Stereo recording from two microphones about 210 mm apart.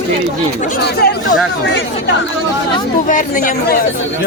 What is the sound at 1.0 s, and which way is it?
Speech, 50° left (ahead or behind).